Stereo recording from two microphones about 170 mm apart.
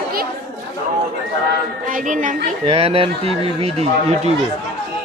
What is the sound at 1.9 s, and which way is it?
Speech, 50° right (ahead or behind).